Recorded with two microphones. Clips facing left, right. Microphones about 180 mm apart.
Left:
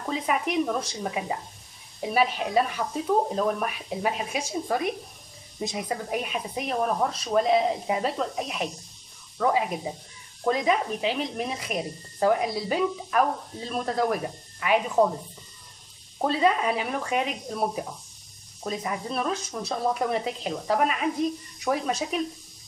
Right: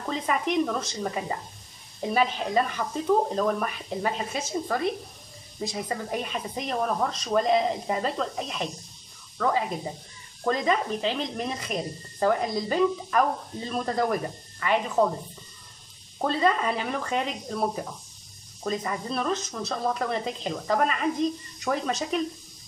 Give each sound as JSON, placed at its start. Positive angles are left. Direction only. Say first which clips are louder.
{"t": 0.1, "sound": "speech", "louder": "even", "side_deg": 10}
{"t": 5.9, "sound": "speech", "louder": "left 1 dB", "side_deg": 10}
{"t": 16.2, "sound": "speech", "louder": "left 1 dB", "side_deg": 10}